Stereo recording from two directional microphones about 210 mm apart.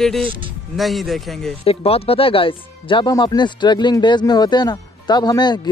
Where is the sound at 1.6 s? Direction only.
30° left (ahead or behind).